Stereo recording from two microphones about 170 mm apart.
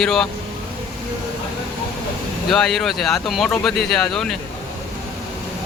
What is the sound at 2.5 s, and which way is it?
Speech, 5° left (ahead or behind).